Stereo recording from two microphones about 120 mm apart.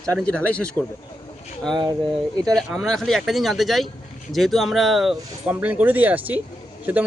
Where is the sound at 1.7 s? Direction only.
40° right (ahead or behind).